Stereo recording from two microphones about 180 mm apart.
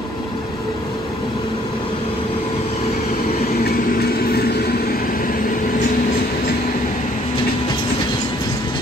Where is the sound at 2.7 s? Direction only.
35° left (ahead or behind).